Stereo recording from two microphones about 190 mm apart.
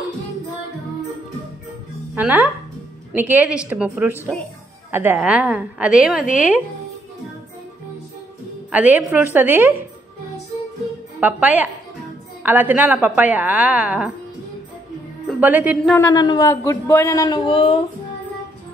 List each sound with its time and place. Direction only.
2.1 s speech: 10° right (ahead or behind)
8.7 s speech: 10° right (ahead or behind)
11.1 s speech: 10° right (ahead or behind)
15.4 s speech: 10° right (ahead or behind)
16.1 s a man's voice: 20° left (ahead or behind)
17.5 s music: 30° left (ahead or behind)